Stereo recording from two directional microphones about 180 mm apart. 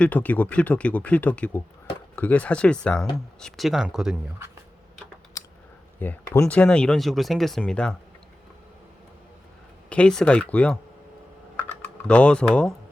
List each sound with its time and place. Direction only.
0.0 s speech: 10° left (ahead or behind)
5.4 s a sound: 20° left (ahead or behind)
6.0 s speech: 10° left (ahead or behind)
9.9 s speech: 5° left (ahead or behind)
12.0 s speech: 5° left (ahead or behind)